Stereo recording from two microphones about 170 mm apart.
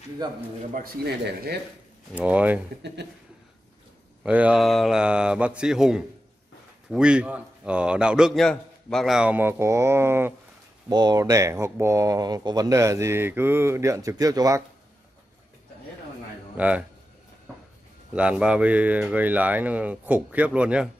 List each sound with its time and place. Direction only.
0.2 s a man's voice: 25° right (ahead or behind)
0.7 s speech: 65° right (ahead or behind)
2.1 s speech: 10° right (ahead or behind)
4.2 s speech: 10° right (ahead or behind)
10.9 s speech: 25° right (ahead or behind)
16.5 s speech: 10° right (ahead or behind)
18.1 s speech: 5° right (ahead or behind)